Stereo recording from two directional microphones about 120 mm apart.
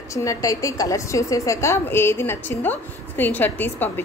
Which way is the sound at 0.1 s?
25° left (ahead or behind).